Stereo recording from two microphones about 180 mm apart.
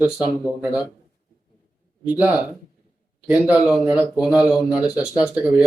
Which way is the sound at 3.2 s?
5° right (ahead or behind).